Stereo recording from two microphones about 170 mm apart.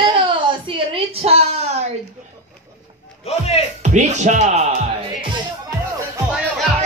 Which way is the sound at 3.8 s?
45° right (ahead or behind).